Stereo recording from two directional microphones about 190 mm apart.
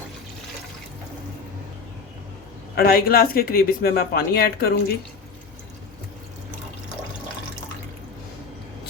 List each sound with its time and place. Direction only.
2.7 s speech: 55° left (ahead or behind)